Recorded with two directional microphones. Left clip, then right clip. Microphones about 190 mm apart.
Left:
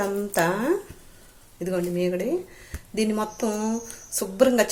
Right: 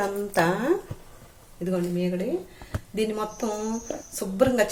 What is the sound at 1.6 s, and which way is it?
A woman's voice, 25° left (ahead or behind).